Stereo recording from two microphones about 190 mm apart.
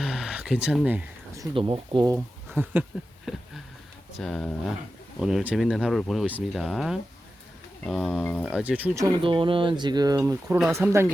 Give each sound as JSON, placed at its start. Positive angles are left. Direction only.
{"t": 0.0, "sound": "a sound", "side_deg": 0}
{"t": 1.5, "sound": "speech", "side_deg": -25}
{"t": 2.1, "sound": "speech", "side_deg": -10}
{"t": 8.5, "sound": "speech", "side_deg": -5}
{"t": 9.0, "sound": "speech", "side_deg": -25}